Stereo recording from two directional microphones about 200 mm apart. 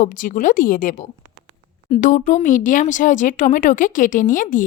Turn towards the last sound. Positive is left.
turn(degrees=40)  # may be behind; listen again after turning